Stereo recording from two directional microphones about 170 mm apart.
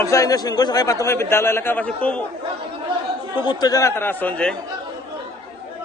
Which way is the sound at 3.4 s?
20° left (ahead or behind).